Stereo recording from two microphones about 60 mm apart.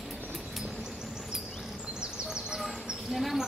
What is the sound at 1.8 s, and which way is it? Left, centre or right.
Duck, centre.